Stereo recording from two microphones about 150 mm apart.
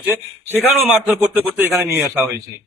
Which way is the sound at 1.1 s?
15° right (ahead or behind).